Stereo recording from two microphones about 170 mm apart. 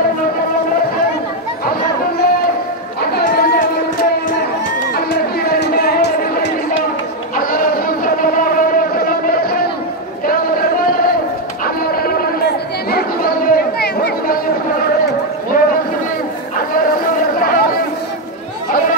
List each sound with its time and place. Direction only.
1.7 s chatter: 60° left (ahead or behind)
4.9 s music: 65° left (ahead or behind)
7.3 s a sound: 55° left (ahead or behind)
11.6 s chatter: 60° left (ahead or behind)
15.5 s boat: 60° left (ahead or behind)